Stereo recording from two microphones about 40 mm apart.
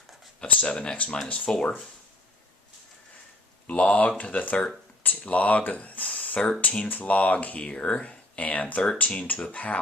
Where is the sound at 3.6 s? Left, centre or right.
Left.